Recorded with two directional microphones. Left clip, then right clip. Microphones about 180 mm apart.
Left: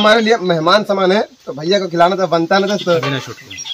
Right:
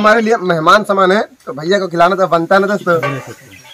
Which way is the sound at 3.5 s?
25° left (ahead or behind).